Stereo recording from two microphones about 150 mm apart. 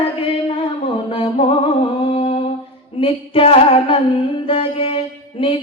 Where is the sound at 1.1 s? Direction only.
40° left (ahead or behind).